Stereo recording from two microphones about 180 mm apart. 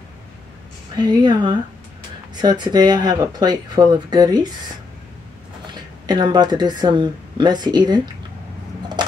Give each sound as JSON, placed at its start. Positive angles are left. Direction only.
{"t": 0.9, "sound": "speech", "side_deg": -25}
{"t": 6.0, "sound": "speech", "side_deg": -25}